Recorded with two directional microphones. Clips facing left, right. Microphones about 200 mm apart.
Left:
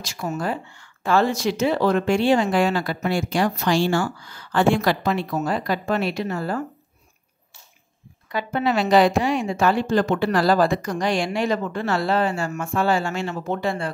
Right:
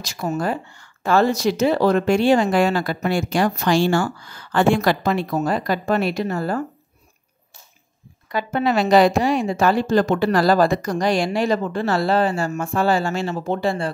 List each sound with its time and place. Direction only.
0.0 s speech: 40° right (ahead or behind)
8.3 s a woman's voice: 40° right (ahead or behind)